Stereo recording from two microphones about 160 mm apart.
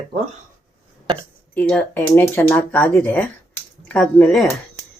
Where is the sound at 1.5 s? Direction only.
10° left (ahead or behind).